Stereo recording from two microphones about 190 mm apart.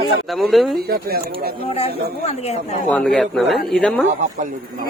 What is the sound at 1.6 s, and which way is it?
Speech, 30° left (ahead or behind).